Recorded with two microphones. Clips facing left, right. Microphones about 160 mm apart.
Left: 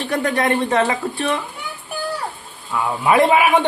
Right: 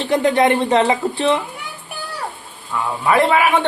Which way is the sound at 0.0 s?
25° right (ahead or behind).